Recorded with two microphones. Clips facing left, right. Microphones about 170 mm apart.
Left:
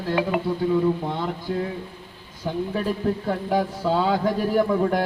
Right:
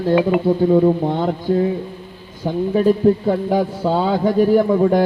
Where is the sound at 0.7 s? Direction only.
40° right (ahead or behind).